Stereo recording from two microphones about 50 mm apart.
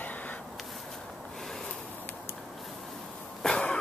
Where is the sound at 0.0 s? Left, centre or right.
Left.